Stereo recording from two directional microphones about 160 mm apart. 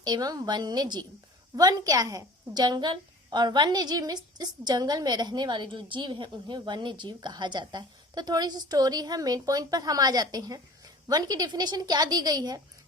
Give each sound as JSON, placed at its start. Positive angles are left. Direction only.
{"t": 0.0, "sound": "a woman's voice", "side_deg": -25}